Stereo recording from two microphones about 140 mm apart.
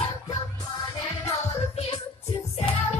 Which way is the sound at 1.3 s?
50° left (ahead or behind).